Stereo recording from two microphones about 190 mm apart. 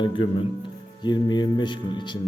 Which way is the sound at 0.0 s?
25° left (ahead or behind).